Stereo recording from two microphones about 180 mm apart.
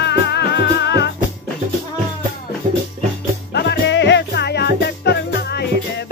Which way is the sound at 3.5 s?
65° left (ahead or behind).